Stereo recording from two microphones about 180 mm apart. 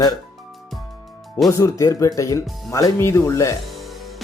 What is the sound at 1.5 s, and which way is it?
Speech, 15° left (ahead or behind).